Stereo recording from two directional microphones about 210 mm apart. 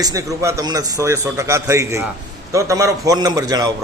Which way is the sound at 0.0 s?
15° right (ahead or behind).